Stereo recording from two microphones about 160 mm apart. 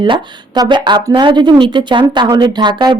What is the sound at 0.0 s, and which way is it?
A woman's voice, 25° right (ahead or behind).